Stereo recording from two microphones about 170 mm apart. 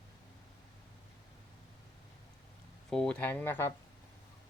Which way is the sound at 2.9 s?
5° left (ahead or behind).